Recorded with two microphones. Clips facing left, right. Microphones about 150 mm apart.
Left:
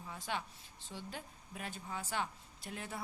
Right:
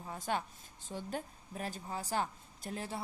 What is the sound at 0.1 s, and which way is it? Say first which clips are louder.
A woman's voice: right 5 dB; 45° right (ahead or behind).